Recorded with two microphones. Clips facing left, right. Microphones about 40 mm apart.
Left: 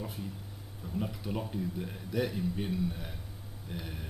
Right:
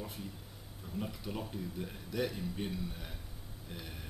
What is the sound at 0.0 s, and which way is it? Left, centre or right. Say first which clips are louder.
A man's voice: left 4 dB; centre.